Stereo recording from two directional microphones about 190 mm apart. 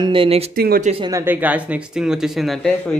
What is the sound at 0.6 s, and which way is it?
Speech, 55° right (ahead or behind).